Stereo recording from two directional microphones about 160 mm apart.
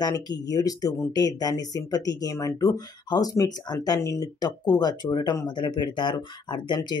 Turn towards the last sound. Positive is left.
turn(degrees=25)  # may be behind; listen again after turning